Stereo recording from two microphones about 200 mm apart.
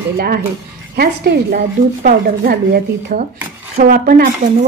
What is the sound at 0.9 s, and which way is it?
A woman's voice, 50° right (ahead or behind).